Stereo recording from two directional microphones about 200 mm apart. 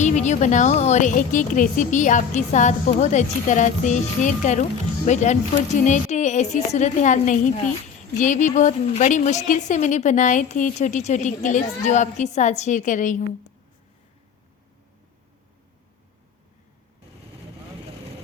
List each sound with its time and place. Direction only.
0.0 s a woman's voice: 35° left (ahead or behind)